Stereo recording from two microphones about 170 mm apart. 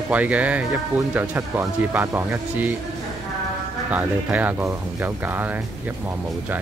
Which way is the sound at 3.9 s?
10° right (ahead or behind).